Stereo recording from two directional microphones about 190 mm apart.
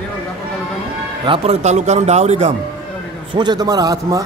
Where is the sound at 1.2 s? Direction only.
30° right (ahead or behind).